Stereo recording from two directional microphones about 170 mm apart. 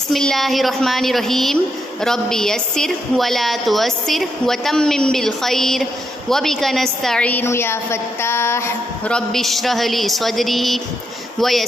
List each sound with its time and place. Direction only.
0.1 s a woman's voice: centre (ahead or behind)
9.1 s a woman's voice: centre (ahead or behind)